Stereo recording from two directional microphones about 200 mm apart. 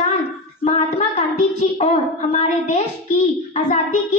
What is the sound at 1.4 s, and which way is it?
A child's voice, 35° left (ahead or behind).